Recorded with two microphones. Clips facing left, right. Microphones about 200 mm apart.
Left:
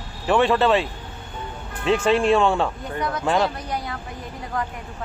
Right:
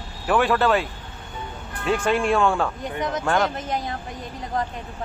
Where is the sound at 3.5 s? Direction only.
20° right (ahead or behind).